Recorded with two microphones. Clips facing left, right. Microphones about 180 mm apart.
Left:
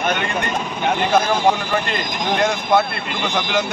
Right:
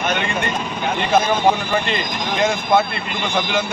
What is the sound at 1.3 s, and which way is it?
Speech, 5° right (ahead or behind).